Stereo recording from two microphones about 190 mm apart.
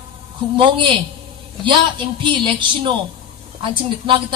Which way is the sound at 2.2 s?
25° right (ahead or behind).